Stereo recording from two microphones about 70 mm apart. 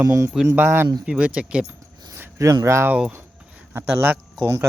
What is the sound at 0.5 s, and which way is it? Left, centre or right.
Speech, right.